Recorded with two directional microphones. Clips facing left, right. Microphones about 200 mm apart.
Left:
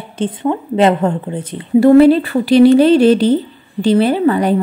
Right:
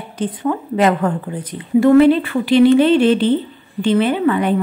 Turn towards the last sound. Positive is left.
turn(degrees=35)  # may be behind; listen again after turning